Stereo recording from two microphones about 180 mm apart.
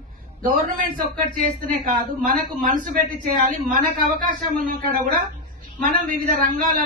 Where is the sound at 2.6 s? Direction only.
50° right (ahead or behind).